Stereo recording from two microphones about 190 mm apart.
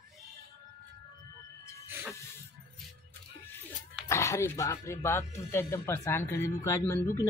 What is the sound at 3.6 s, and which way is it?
Speech, 15° left (ahead or behind).